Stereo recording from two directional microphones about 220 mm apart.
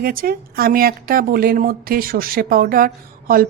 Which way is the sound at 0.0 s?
40° right (ahead or behind).